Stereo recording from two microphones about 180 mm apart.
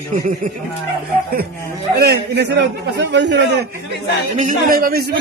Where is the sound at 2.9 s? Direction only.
75° right (ahead or behind).